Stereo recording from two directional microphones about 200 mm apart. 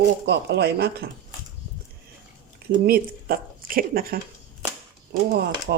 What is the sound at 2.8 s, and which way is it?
Speech, 50° right (ahead or behind).